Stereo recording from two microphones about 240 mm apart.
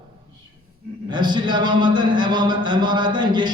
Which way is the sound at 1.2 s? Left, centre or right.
Centre.